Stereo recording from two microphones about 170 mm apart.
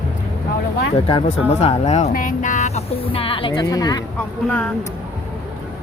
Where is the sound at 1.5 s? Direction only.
40° left (ahead or behind); by 4.0 s 20° left (ahead or behind).